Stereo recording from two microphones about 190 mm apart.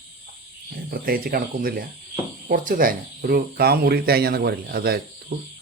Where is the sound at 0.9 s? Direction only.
50° right (ahead or behind).